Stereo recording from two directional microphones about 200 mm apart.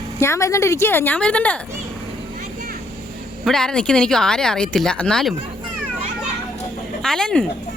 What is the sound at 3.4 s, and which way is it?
Speech, centre (ahead or behind).